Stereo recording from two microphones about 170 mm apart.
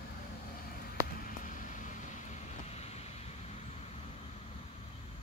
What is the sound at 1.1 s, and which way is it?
Vehicle, 50° left (ahead or behind).